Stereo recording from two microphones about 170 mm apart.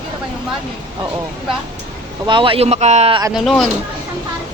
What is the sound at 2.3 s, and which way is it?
Speech, 30° right (ahead or behind).